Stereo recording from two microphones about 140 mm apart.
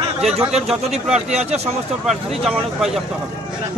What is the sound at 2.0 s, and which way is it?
Speech, 5° right (ahead or behind).